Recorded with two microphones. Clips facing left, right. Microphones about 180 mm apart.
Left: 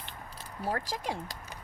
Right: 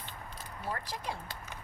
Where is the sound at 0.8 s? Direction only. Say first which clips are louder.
Left 4 dB; 90° left.